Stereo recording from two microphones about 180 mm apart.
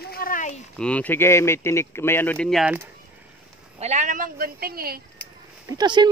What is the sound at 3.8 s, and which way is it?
A woman's voice, 40° right (ahead or behind).